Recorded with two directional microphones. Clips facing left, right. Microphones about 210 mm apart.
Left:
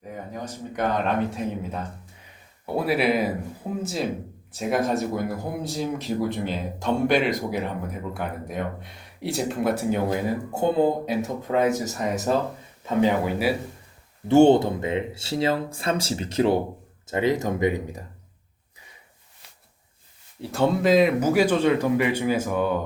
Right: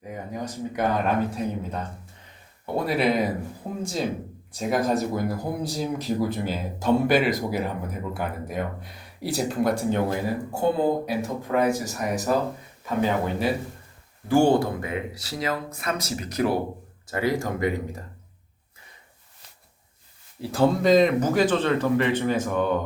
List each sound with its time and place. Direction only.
0.1 s speech: 10° right (ahead or behind)
1.3 s speech: centre (ahead or behind)
10.6 s speech: 20° left (ahead or behind)
14.3 s speech: 25° left (ahead or behind)
20.4 s speech: centre (ahead or behind)